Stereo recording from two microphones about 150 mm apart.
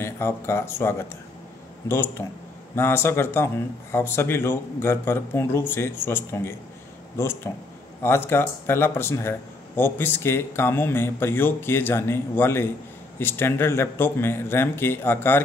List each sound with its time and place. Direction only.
0.0 s speech: 15° left (ahead or behind)
8.0 s speech: 15° left (ahead or behind)